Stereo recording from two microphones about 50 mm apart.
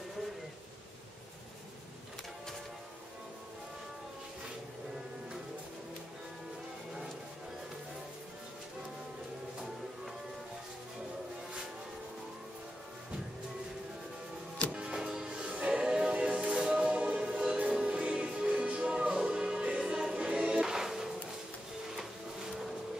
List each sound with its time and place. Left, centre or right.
14.7 s music: centre
20.2 s choir: right
20.6 s music: centre